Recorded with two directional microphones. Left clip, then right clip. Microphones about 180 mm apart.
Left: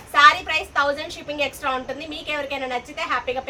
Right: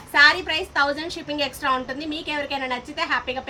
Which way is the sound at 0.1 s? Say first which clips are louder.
Left 2 dB; 15° left (ahead or behind).